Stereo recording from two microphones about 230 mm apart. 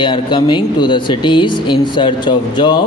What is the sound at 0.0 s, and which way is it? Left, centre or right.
A man's voice, left.